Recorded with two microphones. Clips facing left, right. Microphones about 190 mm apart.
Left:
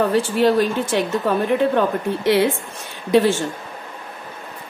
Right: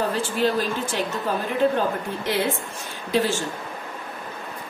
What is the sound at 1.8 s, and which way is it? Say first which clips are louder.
Speech: left 5 dB; 65° left (ahead or behind).